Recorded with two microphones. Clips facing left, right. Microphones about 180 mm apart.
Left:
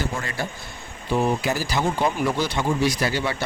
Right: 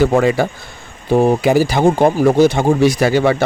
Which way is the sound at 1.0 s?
45° right (ahead or behind).